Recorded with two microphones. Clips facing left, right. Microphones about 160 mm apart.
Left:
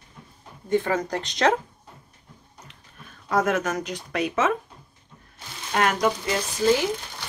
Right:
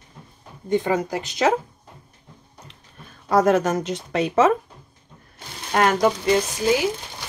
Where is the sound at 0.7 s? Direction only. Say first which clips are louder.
Right 2 dB; 15° right (ahead or behind).